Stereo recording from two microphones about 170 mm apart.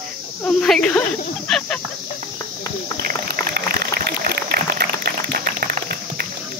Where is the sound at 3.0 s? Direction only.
65° right (ahead or behind).